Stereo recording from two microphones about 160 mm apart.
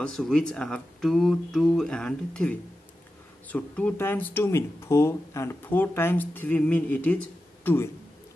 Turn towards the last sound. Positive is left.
turn(degrees=15)  # may be behind; listen again after turning